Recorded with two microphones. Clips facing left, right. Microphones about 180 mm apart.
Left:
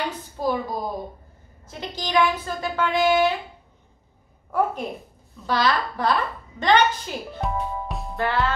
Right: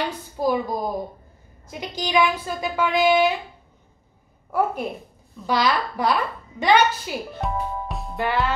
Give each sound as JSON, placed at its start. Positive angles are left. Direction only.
{"t": 0.4, "sound": "a woman's voice", "side_deg": -15}
{"t": 4.5, "sound": "a woman's voice", "side_deg": -10}
{"t": 8.2, "sound": "a woman's voice", "side_deg": -15}